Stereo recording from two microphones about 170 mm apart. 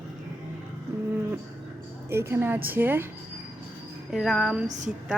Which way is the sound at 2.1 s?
15° right (ahead or behind).